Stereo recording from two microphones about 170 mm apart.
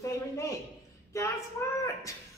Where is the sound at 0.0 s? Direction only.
20° left (ahead or behind).